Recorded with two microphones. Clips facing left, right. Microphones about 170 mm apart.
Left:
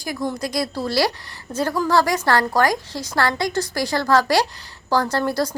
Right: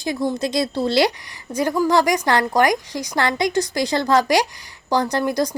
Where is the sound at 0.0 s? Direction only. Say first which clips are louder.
Right 3 dB; 25° right (ahead or behind).